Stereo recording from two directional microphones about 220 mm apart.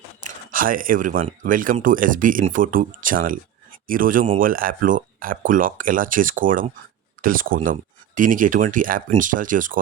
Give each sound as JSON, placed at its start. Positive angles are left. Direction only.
{"t": 0.2, "sound": "speech", "side_deg": -40}